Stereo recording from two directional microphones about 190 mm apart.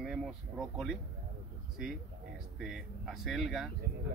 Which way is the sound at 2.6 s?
Centre (ahead or behind).